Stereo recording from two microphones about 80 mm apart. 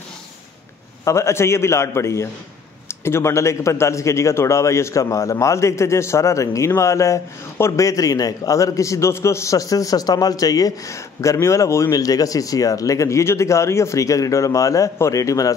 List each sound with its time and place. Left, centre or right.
1.0 s a man's voice: left
7.8 s a man's voice: left
11.9 s a man's voice: left